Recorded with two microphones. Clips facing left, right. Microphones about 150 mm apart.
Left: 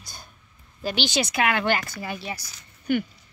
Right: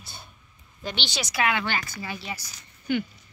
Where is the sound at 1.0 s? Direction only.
50° left (ahead or behind).